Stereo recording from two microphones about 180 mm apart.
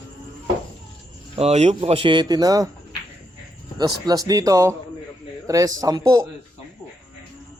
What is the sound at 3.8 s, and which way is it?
Speech, 20° right (ahead or behind).